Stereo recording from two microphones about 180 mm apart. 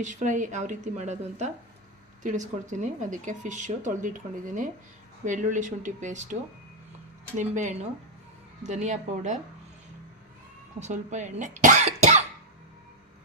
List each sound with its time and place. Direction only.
0.0 s speech: 45° right (ahead or behind)
7.3 s speech: 45° right (ahead or behind)
10.8 s speech: 40° right (ahead or behind)